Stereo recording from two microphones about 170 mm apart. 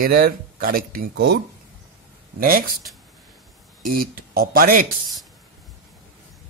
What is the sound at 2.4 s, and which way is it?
Speech, 60° right (ahead or behind).